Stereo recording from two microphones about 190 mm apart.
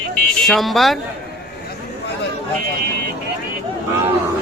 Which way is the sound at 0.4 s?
Centre (ahead or behind).